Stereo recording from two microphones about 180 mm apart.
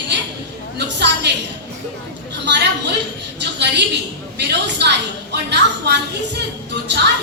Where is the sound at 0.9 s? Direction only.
70° right (ahead or behind).